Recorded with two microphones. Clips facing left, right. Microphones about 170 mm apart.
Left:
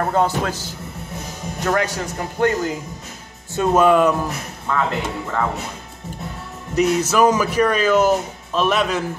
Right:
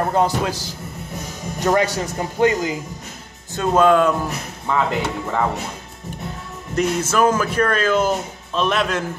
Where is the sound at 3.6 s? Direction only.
5° left (ahead or behind).